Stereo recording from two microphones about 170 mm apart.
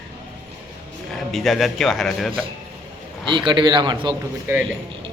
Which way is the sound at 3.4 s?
25° right (ahead or behind).